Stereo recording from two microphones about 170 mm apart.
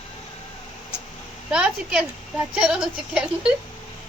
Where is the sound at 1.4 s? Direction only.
5° right (ahead or behind).